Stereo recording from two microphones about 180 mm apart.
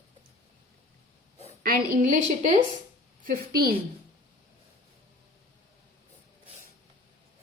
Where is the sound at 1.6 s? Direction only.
50° right (ahead or behind).